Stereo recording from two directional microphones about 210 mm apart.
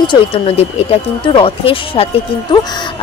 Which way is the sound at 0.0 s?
25° left (ahead or behind).